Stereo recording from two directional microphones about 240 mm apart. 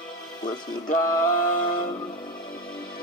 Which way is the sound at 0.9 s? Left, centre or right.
Left.